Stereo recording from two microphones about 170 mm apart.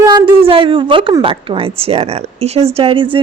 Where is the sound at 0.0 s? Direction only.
20° right (ahead or behind).